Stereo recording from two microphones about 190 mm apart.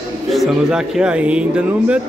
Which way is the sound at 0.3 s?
Centre (ahead or behind).